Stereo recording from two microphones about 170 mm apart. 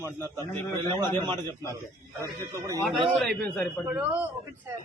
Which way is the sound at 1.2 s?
25° right (ahead or behind).